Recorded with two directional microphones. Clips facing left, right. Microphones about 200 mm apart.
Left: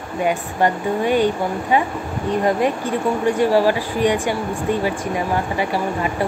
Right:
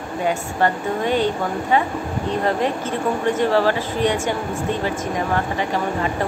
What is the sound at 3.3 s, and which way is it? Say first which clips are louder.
Speech: left 2 dB; 10° left (ahead or behind).